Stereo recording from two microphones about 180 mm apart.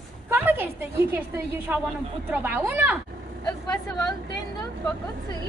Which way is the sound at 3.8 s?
5° left (ahead or behind).